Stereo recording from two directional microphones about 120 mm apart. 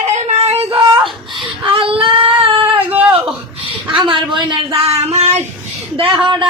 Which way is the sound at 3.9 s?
45° right (ahead or behind).